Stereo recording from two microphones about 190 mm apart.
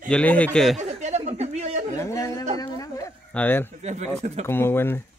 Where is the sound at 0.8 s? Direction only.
35° right (ahead or behind).